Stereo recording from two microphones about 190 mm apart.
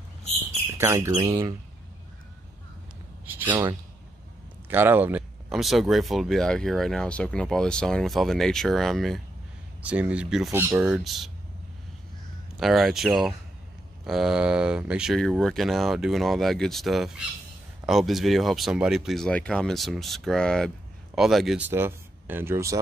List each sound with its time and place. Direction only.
0.7 s speech: 15° right (ahead or behind)
4.6 s speech: 10° right (ahead or behind)
12.5 s speech: centre (ahead or behind)